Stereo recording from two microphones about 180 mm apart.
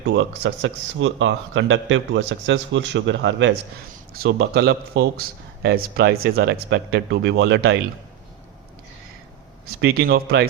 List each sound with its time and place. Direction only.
0.0 s speech: 70° right (ahead or behind); by 3.5 s 90° right
4.1 s speech: 65° right (ahead or behind)
9.6 s speech: 60° right (ahead or behind)